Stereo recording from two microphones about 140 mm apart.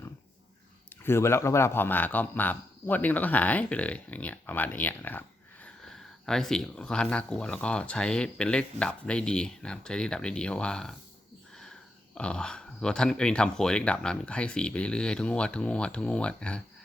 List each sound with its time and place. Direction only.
1.0 s speech: 20° left (ahead or behind)
12.1 s speech: 5° left (ahead or behind)